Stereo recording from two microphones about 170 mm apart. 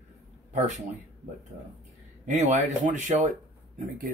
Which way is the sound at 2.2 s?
45° right (ahead or behind).